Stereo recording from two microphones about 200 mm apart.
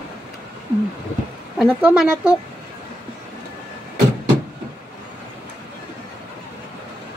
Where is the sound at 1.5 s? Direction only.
5° right (ahead or behind).